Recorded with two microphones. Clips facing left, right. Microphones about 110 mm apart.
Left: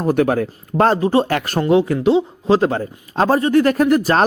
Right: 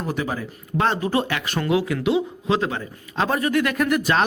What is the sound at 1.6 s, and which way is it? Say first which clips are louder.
A man's voice: left 6 dB; 30° left (ahead or behind).